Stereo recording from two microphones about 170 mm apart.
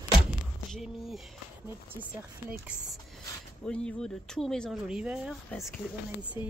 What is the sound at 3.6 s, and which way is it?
Speech, 5° left (ahead or behind).